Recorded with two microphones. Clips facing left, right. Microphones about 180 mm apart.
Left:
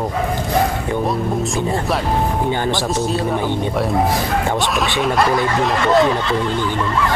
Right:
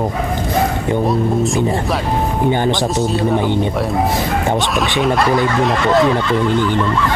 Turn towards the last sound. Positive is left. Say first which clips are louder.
# right 1 dB
turn(degrees=0)  # may be behind; listen again after turning